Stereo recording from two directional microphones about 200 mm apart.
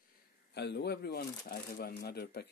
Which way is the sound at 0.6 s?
55° left (ahead or behind).